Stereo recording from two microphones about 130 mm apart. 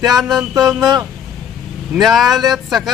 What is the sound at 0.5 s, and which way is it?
Speech, 30° right (ahead or behind).